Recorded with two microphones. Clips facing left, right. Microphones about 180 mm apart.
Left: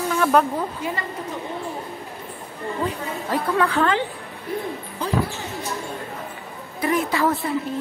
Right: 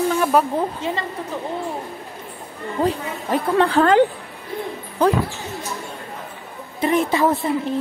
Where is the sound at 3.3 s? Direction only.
30° right (ahead or behind).